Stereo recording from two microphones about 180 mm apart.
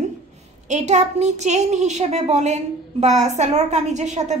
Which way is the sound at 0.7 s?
40° right (ahead or behind).